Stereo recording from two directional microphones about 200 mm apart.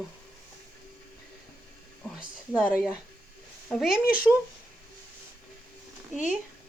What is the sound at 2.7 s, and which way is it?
Speech, 5° right (ahead or behind).